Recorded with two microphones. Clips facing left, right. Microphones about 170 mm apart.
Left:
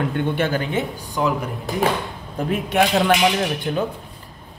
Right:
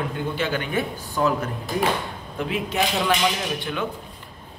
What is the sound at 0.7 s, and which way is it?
Speech, 20° left (ahead or behind).